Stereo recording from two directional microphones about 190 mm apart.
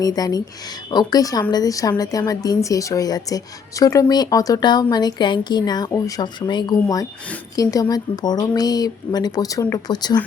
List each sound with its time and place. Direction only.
0.0 s a woman's voice: 20° left (ahead or behind)